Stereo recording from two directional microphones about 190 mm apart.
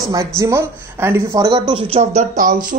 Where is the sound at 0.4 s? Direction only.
15° right (ahead or behind).